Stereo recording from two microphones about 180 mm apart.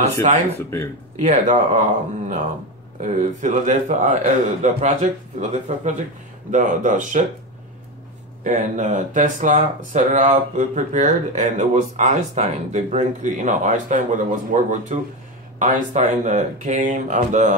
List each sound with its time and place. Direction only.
0.2 s speech: 35° right (ahead or behind)
8.5 s speech: 45° right (ahead or behind)